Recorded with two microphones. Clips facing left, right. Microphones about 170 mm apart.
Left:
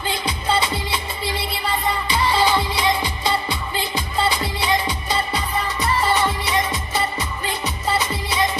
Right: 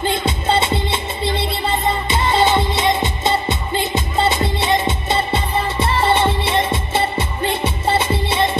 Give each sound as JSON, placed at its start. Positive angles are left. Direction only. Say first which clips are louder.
{"t": 0.2, "sound": "music", "louder": "right 4 dB", "side_deg": -25}